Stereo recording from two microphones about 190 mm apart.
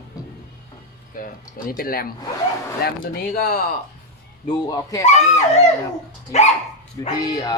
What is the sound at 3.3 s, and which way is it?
Speech, 55° left (ahead or behind).